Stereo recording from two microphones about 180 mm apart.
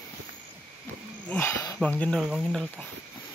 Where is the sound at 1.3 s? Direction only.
15° left (ahead or behind).